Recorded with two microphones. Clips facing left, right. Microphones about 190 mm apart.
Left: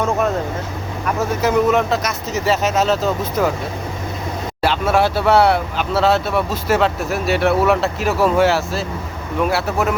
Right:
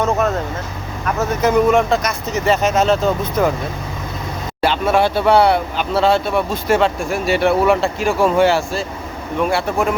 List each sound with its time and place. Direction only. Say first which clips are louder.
1.4 s speech: right 2 dB; 5° left (ahead or behind)
4.6 s speech: right 1 dB; centre (ahead or behind)